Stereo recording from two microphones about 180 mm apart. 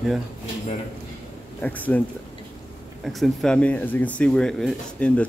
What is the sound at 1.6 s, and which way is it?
Speech, 10° left (ahead or behind).